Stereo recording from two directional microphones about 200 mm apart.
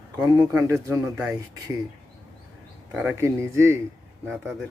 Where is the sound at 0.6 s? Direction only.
15° right (ahead or behind).